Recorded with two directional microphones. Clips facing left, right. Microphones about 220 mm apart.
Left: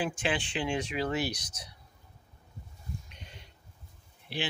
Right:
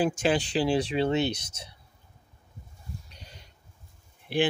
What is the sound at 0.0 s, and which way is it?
Speech, 40° right (ahead or behind).